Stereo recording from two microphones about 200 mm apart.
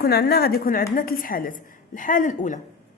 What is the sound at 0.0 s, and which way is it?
A woman's voice, 50° left (ahead or behind).